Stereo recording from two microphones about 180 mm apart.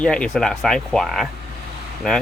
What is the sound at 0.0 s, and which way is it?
Speech, 5° left (ahead or behind).